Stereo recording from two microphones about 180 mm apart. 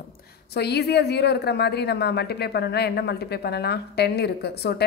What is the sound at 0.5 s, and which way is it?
A woman's voice, 65° left (ahead or behind).